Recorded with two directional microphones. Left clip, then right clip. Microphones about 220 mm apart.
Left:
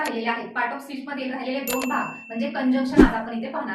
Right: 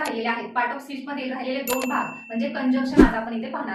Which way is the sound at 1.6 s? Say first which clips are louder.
Right 1 dB; centre (ahead or behind).